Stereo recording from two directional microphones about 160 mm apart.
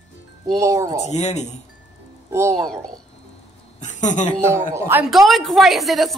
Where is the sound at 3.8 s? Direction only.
50° left (ahead or behind).